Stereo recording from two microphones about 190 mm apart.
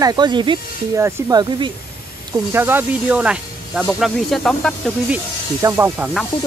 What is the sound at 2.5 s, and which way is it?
Speech, 10° right (ahead or behind).